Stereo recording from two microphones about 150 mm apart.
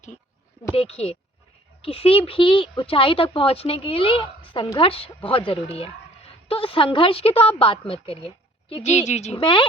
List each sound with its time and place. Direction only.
0.8 s speech: 45° left (ahead or behind)
8.8 s speech: 50° left (ahead or behind); by 9.6 s 35° left (ahead or behind)